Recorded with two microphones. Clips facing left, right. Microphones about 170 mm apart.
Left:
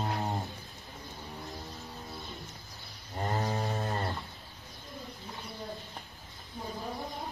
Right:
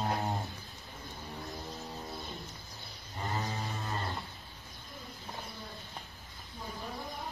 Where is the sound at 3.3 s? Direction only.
55° left (ahead or behind).